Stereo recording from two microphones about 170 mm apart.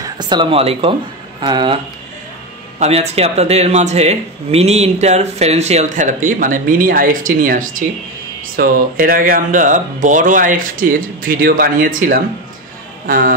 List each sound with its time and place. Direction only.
0.0 s speech: 25° right (ahead or behind)
2.8 s speech: 40° right (ahead or behind); by 13.3 s 55° right (ahead or behind)